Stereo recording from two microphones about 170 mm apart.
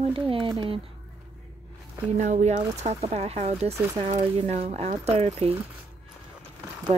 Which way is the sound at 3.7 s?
15° right (ahead or behind).